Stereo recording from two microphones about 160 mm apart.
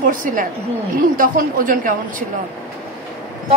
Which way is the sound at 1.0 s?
60° right (ahead or behind).